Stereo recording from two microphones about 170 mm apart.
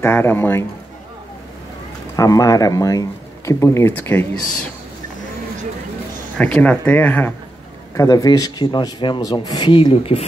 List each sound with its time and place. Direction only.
0.0 s speech: 15° left (ahead or behind)
2.1 s speech: 20° left (ahead or behind)
6.3 s speech: 10° left (ahead or behind); by 10.2 s 30° left (ahead or behind)